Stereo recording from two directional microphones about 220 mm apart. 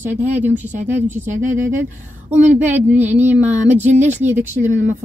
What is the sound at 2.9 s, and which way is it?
Speech, 10° right (ahead or behind).